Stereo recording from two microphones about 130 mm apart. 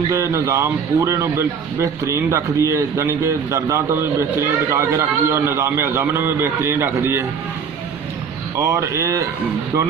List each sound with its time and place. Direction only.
0.1 s speech: 25° right (ahead or behind)
8.5 s speech: 25° right (ahead or behind)